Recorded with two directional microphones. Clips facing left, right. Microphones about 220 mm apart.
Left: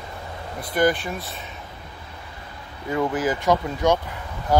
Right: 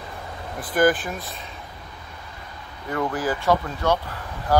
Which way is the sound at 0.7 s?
Centre (ahead or behind).